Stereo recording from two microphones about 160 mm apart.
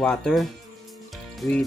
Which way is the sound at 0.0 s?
5° left (ahead or behind).